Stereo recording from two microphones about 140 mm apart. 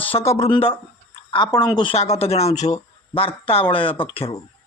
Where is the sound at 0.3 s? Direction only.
45° left (ahead or behind).